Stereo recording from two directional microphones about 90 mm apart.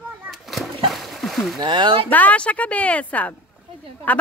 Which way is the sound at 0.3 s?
Centre (ahead or behind).